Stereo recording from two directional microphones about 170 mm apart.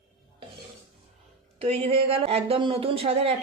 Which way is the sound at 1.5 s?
35° right (ahead or behind).